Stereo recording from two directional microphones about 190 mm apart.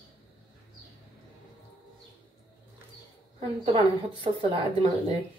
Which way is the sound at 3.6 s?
25° right (ahead or behind).